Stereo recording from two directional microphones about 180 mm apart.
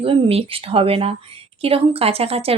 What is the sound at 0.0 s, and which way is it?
A woman's voice, 30° right (ahead or behind).